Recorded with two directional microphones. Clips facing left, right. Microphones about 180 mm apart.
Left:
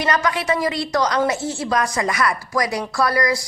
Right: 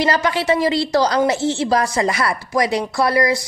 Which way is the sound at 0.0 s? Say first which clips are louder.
Right 3 dB; 30° right (ahead or behind).